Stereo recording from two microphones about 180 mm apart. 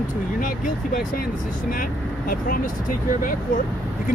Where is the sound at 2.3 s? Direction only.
50° left (ahead or behind).